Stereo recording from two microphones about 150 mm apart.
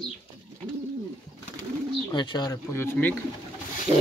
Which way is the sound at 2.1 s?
30° left (ahead or behind).